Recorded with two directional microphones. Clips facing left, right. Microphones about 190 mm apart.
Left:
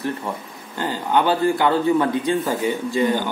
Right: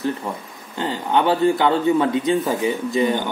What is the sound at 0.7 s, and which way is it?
A man's voice, 25° right (ahead or behind).